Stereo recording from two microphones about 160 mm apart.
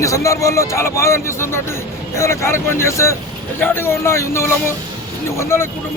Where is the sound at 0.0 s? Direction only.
20° left (ahead or behind).